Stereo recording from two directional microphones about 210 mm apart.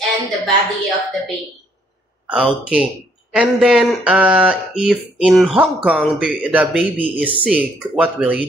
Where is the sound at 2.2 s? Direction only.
5° right (ahead or behind).